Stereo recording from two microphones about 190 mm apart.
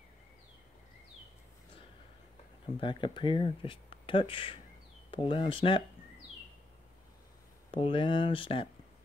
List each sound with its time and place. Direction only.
2.8 s speech: 25° left (ahead or behind)
7.7 s speech: 25° left (ahead or behind)